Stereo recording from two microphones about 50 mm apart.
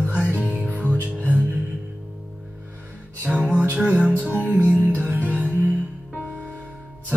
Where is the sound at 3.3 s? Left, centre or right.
Centre.